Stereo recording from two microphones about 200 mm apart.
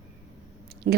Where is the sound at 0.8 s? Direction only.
45° right (ahead or behind).